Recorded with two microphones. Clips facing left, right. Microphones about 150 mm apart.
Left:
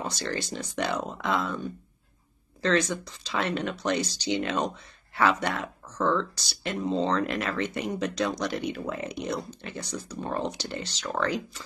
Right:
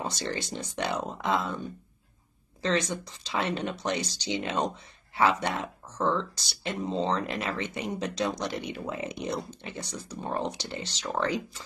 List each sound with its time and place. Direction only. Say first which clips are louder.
0.0 s speech: left 1 dB; 20° right (ahead or behind)
2.6 s speech: left 3 dB; 20° right (ahead or behind)